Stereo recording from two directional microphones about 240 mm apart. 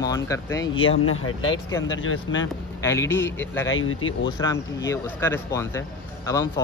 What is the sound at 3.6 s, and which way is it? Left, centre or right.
Speech, left.